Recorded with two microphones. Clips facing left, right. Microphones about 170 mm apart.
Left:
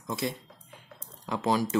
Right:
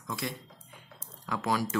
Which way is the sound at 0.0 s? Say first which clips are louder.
Left 4 dB; 25° left (ahead or behind).